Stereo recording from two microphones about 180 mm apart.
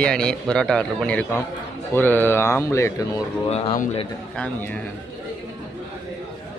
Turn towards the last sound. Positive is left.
turn(degrees=10)  # may be behind; listen again after turning